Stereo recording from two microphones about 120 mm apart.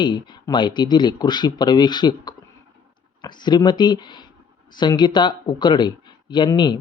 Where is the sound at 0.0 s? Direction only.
40° left (ahead or behind).